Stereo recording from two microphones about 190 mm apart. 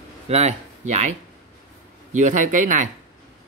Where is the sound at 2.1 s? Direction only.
40° right (ahead or behind).